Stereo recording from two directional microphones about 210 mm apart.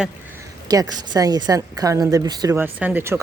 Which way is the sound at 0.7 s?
20° right (ahead or behind).